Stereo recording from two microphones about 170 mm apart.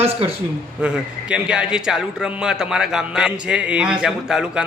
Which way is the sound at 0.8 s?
5° right (ahead or behind).